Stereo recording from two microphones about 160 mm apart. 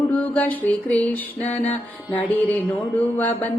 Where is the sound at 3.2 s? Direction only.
10° left (ahead or behind).